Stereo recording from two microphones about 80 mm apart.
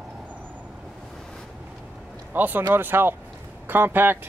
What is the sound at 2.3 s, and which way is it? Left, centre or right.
Speech, right.